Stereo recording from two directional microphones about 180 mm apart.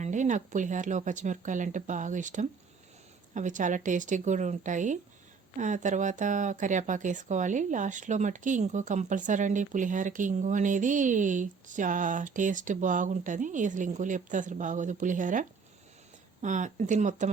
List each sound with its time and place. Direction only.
0.0 s speech: 45° right (ahead or behind)